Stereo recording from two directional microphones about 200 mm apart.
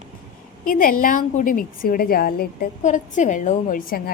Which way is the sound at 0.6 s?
45° left (ahead or behind).